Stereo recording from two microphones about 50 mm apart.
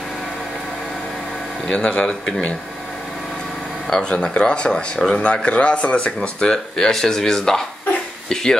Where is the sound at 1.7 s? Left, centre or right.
Left.